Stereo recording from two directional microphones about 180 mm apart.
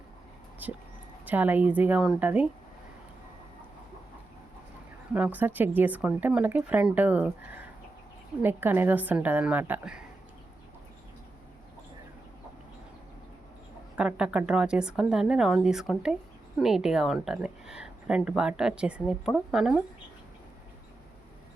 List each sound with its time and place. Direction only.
0.6 s speech: 10° right (ahead or behind)
5.1 s speech: 10° right (ahead or behind)
13.9 s a woman's voice: 5° right (ahead or behind)